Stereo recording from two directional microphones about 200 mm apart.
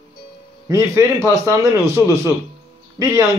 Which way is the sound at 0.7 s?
15° right (ahead or behind).